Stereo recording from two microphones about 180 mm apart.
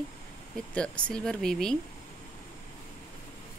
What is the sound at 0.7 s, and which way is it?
Speech, 5° left (ahead or behind).